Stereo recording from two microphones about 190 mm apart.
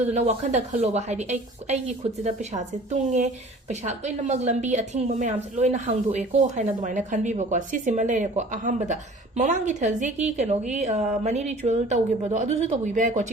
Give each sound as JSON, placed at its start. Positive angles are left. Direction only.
{"t": 0.1, "sound": "a woman's voice", "side_deg": -35}